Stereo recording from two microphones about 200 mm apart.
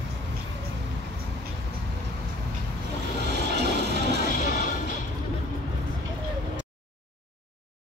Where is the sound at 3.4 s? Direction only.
55° right (ahead or behind).